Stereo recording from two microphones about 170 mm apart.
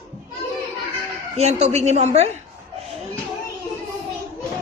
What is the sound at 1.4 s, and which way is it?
Speech, 40° right (ahead or behind).